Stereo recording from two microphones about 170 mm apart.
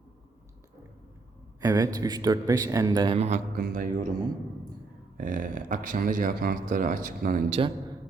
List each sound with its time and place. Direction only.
1.6 s speech: 20° right (ahead or behind)
3.2 s speech: 40° right (ahead or behind)
3.5 s a man's voice: 55° right (ahead or behind)
5.1 s speech: 55° right (ahead or behind)